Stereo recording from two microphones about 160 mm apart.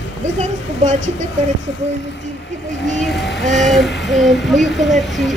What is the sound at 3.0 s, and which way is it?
A child's voice, centre (ahead or behind).